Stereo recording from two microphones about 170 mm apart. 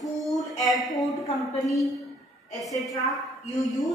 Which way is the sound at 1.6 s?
Centre (ahead or behind).